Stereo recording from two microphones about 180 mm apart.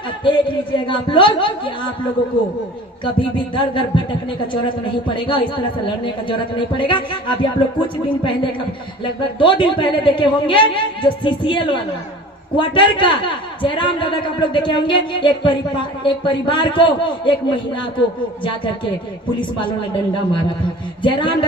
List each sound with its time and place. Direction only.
0.3 s a man's voice: 25° left (ahead or behind)
3.0 s a man's voice: 25° left (ahead or behind)
9.4 s a man's voice: 25° left (ahead or behind)
19.6 s a man's voice: 25° left (ahead or behind)